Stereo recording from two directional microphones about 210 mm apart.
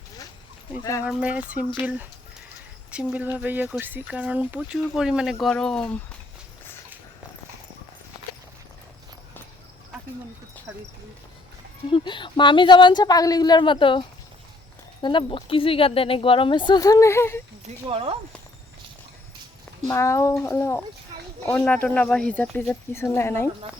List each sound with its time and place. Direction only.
0.8 s speech: 15° left (ahead or behind)
1.0 s speech: 5° right (ahead or behind)
11.9 s speech: 25° left (ahead or behind)
15.0 s speech: 25° left (ahead or behind)
17.8 s speech: 25° right (ahead or behind)
19.9 s speech: 15° left (ahead or behind)